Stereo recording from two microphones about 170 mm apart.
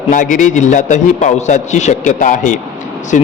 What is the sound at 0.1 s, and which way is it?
A man's voice, 50° left (ahead or behind).